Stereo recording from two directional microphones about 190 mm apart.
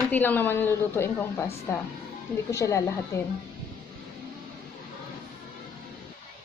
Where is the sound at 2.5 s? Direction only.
15° left (ahead or behind).